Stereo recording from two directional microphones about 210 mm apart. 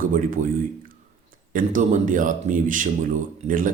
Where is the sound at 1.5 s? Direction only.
40° right (ahead or behind).